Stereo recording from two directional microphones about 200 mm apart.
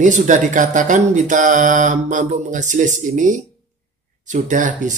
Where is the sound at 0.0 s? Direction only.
40° right (ahead or behind).